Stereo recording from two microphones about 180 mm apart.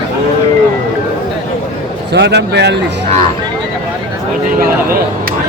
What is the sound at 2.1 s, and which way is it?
Speech, 70° right (ahead or behind).